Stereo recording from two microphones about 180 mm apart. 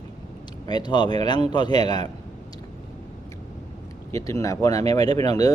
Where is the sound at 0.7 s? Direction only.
25° left (ahead or behind).